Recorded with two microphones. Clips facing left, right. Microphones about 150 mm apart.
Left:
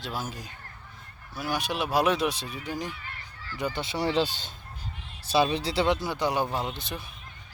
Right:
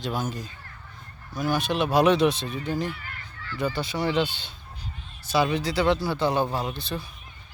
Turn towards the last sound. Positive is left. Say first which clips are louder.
# right 3 dB
turn(degrees=20)  # may be behind; listen again after turning